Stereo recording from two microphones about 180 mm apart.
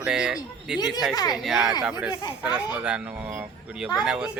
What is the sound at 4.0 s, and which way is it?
Speech, 5° right (ahead or behind).